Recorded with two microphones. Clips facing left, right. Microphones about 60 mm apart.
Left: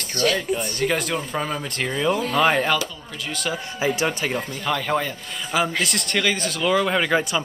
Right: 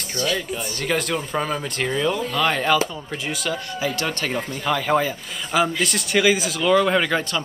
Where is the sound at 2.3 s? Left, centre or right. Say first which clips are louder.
Left 3 dB; centre.